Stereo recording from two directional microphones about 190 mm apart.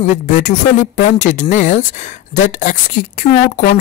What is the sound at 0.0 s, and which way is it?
Speech, 40° left (ahead or behind).